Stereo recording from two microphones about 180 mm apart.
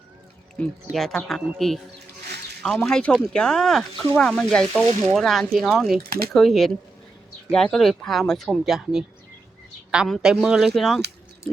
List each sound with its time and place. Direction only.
0.6 s speech: 5° left (ahead or behind)
6.0 s speech: 55° right (ahead or behind)
6.3 s speech: centre (ahead or behind)